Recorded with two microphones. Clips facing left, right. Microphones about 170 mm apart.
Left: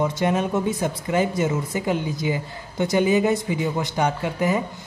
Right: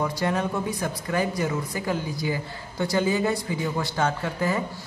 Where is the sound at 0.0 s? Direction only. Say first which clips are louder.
Left 4 dB; 20° left (ahead or behind).